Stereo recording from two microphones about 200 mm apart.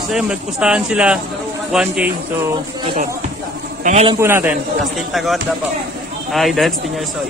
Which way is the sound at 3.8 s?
40° right (ahead or behind).